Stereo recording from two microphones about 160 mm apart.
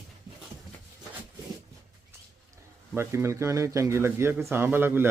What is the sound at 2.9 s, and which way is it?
A man's voice, 15° right (ahead or behind).